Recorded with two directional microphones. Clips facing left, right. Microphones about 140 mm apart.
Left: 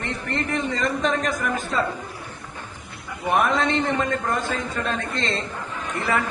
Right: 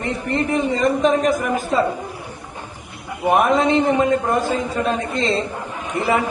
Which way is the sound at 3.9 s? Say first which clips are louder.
Right 7 dB; 15° right (ahead or behind).